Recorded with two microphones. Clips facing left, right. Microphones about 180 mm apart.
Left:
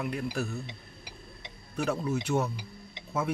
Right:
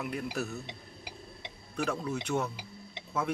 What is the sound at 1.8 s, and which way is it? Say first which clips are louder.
Speech: left 3 dB; 10° left (ahead or behind).